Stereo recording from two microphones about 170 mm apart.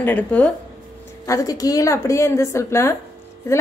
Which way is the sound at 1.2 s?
20° left (ahead or behind).